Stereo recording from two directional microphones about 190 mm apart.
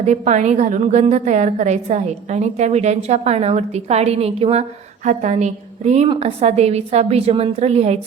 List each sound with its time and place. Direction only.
0.0 s a woman's voice: 35° right (ahead or behind)